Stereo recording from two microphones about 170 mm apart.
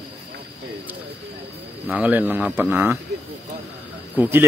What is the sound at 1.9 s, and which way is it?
Speech, 10° right (ahead or behind).